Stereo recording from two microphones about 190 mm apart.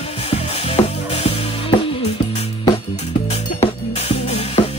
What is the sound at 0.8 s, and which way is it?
Music, 15° left (ahead or behind).